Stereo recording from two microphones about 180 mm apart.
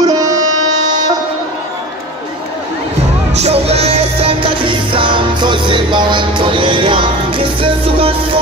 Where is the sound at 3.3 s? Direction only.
35° right (ahead or behind).